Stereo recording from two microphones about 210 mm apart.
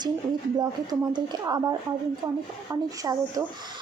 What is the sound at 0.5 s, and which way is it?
A woman's voice, 20° right (ahead or behind).